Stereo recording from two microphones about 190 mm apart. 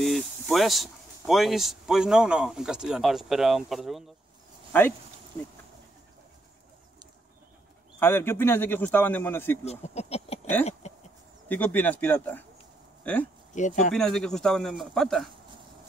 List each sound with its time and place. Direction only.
0.0 s speech: centre (ahead or behind)
8.0 s a man's voice: 10° left (ahead or behind)
9.7 s speech: 35° left (ahead or behind)
10.6 s a sound: 35° left (ahead or behind)
11.4 s a man's voice: 10° left (ahead or behind)
13.6 s speech: 40° left (ahead or behind)
13.9 s speech: 5° left (ahead or behind)